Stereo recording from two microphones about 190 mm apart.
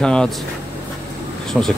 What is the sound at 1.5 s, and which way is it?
Speech, centre (ahead or behind).